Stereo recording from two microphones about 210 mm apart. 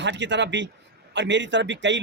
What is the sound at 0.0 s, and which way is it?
A man's voice, 55° right (ahead or behind).